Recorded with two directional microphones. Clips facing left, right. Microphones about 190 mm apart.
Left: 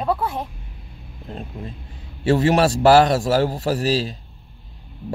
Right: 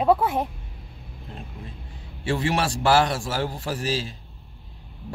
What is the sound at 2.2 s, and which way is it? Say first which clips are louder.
A man's voice: left 8 dB; 40° left (ahead or behind).